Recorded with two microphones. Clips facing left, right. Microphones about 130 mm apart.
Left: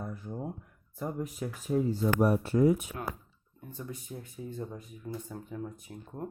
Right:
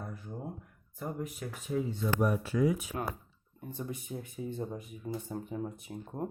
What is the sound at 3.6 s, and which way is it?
Speech, 25° right (ahead or behind).